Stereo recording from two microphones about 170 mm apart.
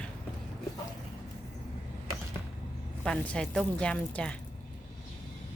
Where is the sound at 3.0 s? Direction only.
5° left (ahead or behind).